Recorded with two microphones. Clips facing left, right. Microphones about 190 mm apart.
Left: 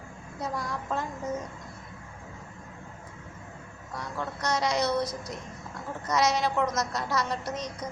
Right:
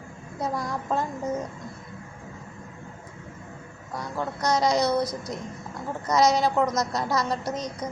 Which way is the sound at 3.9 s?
35° right (ahead or behind).